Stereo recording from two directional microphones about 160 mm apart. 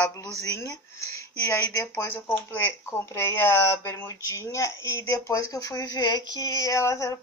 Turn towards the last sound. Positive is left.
turn(degrees=20)  # may be behind; listen again after turning